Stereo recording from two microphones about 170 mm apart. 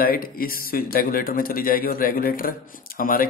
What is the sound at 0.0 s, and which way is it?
A man's voice, 60° left (ahead or behind).